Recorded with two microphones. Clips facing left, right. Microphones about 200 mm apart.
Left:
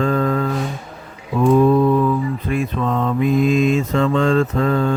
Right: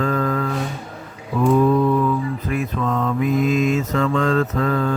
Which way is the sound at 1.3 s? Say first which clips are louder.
Left 2 dB; 30° left (ahead or behind).